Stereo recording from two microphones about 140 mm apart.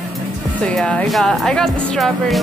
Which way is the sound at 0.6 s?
5° left (ahead or behind).